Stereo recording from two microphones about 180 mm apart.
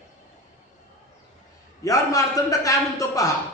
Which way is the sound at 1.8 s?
20° left (ahead or behind).